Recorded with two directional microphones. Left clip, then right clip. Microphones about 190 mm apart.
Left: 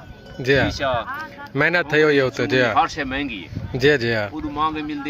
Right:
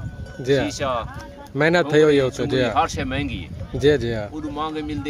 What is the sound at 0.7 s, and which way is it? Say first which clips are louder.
Speech: left 2 dB; 35° right (ahead or behind).